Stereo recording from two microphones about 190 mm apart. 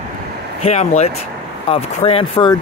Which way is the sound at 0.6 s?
35° left (ahead or behind).